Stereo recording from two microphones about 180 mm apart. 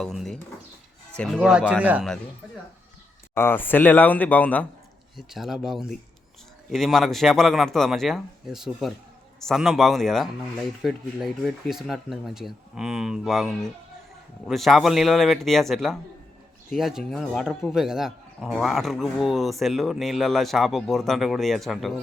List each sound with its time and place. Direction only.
0.0 s a man's voice: centre (ahead or behind)
3.3 s a man's voice: 10° left (ahead or behind)